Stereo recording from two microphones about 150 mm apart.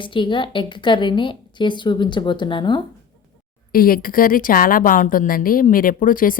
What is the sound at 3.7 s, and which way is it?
A woman's voice, 75° left (ahead or behind).